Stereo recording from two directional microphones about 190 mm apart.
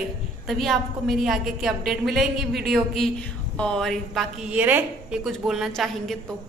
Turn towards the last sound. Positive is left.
turn(degrees=0)  # may be behind; listen again after turning